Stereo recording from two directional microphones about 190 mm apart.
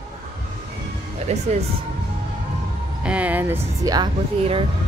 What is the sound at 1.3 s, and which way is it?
Speech, 35° right (ahead or behind).